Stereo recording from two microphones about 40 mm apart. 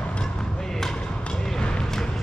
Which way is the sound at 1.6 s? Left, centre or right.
Left.